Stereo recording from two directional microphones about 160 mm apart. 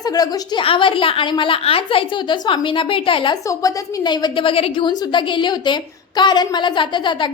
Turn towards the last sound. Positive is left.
turn(degrees=30)  # may be behind; listen again after turning